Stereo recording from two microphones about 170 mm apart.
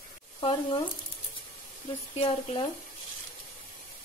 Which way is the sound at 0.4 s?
30° left (ahead or behind).